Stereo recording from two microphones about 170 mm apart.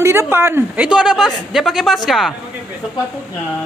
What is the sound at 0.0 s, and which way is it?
A woman's voice, 15° right (ahead or behind).